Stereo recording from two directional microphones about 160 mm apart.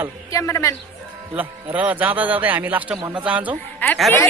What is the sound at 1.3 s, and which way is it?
A man's voice, 10° right (ahead or behind).